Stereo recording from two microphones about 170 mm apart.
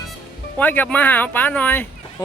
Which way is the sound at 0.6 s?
10° left (ahead or behind).